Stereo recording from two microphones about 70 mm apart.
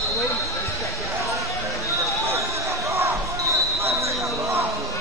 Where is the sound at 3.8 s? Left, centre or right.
Right.